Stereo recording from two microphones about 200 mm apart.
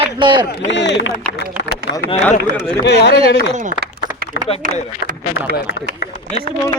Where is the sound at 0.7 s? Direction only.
60° left (ahead or behind).